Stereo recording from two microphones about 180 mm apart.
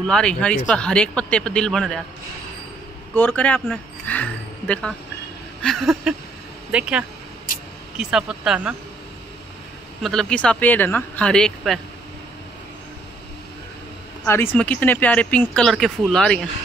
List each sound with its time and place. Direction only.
0.0 s speech: 5° left (ahead or behind)
3.2 s speech: 10° left (ahead or behind); by 7.1 s 5° right (ahead or behind)
7.5 s vehicle: 50° left (ahead or behind)
8.0 s speech: 5° right (ahead or behind)
10.0 s speech: 5° left (ahead or behind)
14.2 s speech: 15° left (ahead or behind)